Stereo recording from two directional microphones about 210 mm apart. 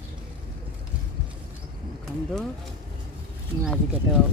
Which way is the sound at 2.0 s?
Centre (ahead or behind).